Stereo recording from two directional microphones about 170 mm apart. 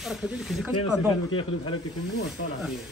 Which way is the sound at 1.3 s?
30° left (ahead or behind).